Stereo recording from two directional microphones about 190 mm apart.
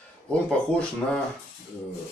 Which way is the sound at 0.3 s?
5° left (ahead or behind).